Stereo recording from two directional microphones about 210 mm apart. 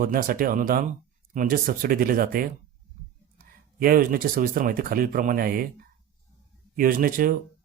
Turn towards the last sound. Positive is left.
turn(degrees=-40)  # may be behind; listen again after turning